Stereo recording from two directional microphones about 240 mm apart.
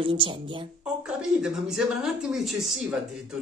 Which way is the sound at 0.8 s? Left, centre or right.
Centre.